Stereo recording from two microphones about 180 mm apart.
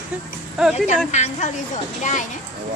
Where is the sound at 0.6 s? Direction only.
5° right (ahead or behind).